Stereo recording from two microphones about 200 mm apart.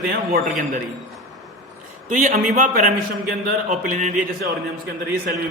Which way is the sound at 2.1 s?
40° right (ahead or behind).